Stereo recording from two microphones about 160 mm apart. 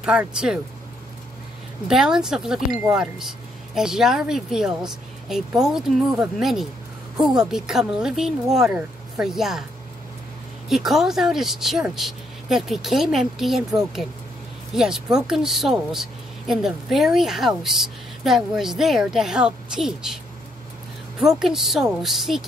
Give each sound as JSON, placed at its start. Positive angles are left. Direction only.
{"t": 0.0, "sound": "speech", "side_deg": -5}
{"t": 1.9, "sound": "speech", "side_deg": -5}
{"t": 10.7, "sound": "speech", "side_deg": 0}
{"t": 21.2, "sound": "speech", "side_deg": 0}